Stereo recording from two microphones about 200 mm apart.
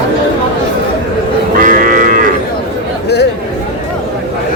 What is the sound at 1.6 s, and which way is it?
Livestock, 40° right (ahead or behind).